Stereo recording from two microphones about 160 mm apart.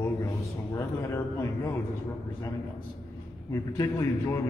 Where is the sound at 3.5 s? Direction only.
20° left (ahead or behind).